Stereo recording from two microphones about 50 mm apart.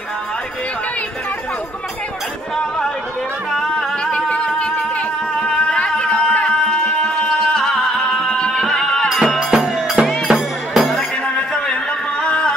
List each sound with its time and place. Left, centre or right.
4.0 s music: left
9.4 s music: centre
11.7 s music: left